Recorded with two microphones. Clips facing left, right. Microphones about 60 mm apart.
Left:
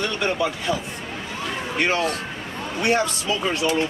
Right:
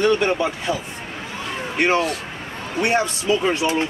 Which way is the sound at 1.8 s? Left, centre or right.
Right.